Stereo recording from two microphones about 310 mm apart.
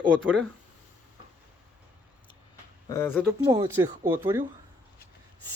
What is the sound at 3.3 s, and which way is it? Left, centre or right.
Speech, centre.